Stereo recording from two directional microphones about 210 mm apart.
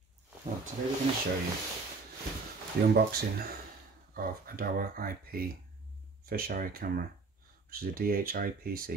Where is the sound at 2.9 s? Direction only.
45° right (ahead or behind).